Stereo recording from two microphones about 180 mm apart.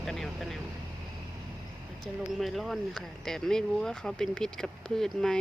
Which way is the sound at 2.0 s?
Centre (ahead or behind).